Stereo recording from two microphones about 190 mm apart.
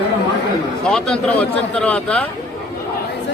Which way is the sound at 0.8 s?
5° left (ahead or behind).